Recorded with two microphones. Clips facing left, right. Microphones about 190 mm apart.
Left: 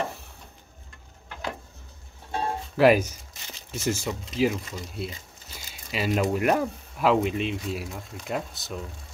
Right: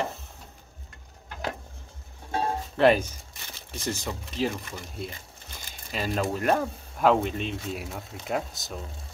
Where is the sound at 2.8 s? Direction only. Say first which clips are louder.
Left 2 dB; 10° left (ahead or behind).